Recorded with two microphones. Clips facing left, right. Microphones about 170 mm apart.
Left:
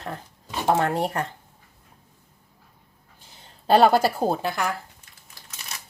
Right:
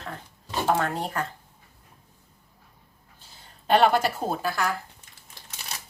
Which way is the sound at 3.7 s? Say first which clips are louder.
Left 3 dB; 35° left (ahead or behind).